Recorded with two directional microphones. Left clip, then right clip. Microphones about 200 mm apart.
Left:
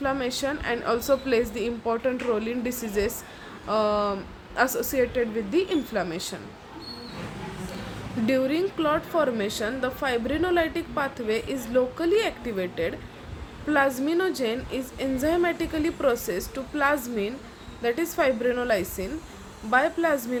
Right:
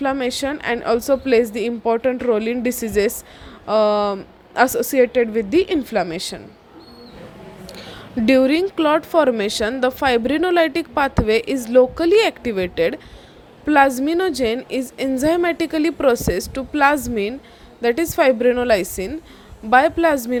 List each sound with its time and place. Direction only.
0.0 s a woman's voice: 35° right (ahead or behind)
8.3 s a woman's voice: 40° right (ahead or behind)